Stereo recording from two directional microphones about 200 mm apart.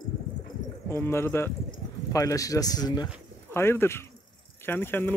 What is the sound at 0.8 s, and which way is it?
Speech, 10° left (ahead or behind).